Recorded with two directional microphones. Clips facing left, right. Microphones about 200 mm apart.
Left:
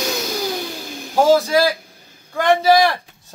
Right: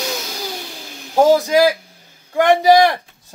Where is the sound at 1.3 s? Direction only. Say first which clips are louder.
Even; 20° right (ahead or behind).